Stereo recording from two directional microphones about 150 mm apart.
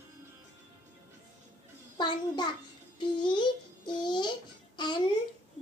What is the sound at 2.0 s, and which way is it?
A child's voice, 30° left (ahead or behind).